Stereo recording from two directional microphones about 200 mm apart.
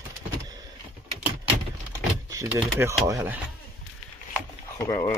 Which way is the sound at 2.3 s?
15° right (ahead or behind).